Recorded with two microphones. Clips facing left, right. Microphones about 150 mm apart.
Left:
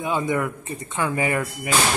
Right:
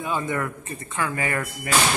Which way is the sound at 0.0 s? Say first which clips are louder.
Left 3 dB; 15° left (ahead or behind).